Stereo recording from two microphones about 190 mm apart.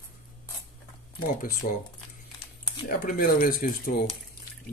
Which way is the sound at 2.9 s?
50° left (ahead or behind).